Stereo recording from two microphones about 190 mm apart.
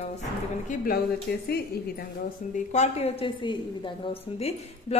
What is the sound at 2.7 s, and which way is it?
A woman's voice, 35° left (ahead or behind).